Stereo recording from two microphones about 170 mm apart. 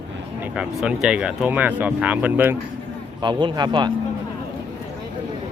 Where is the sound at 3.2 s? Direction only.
25° right (ahead or behind).